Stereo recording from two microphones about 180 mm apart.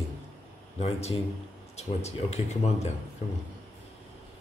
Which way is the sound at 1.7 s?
35° left (ahead or behind).